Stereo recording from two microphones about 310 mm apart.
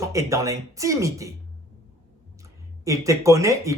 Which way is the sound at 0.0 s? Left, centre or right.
Centre.